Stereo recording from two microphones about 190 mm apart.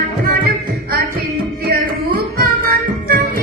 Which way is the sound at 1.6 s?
50° right (ahead or behind).